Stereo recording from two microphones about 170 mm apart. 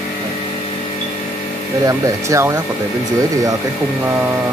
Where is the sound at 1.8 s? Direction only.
15° right (ahead or behind).